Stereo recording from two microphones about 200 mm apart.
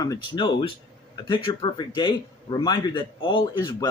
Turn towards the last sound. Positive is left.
turn(degrees=20)  # may be behind; listen again after turning